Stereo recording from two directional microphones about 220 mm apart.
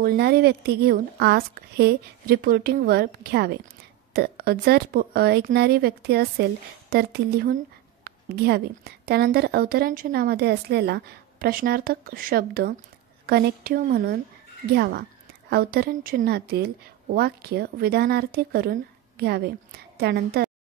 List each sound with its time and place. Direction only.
0.0 s a woman's voice: 45° right (ahead or behind)
8.1 s a sound: 45° right (ahead or behind)
8.5 s a woman's voice: 45° right (ahead or behind)